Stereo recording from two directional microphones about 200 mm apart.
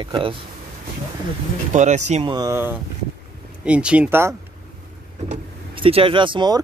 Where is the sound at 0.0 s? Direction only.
25° right (ahead or behind).